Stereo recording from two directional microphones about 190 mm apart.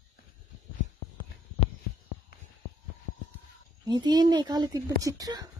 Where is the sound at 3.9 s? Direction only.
20° right (ahead or behind).